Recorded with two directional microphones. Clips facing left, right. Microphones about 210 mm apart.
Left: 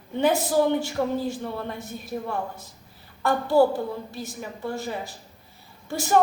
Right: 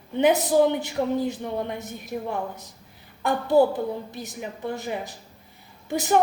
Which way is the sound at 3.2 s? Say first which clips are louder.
Even; 20° right (ahead or behind).